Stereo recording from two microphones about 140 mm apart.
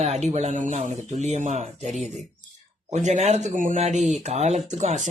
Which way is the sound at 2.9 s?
55° right (ahead or behind).